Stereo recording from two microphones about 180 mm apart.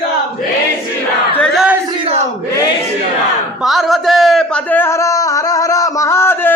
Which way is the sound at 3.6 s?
Centre (ahead or behind).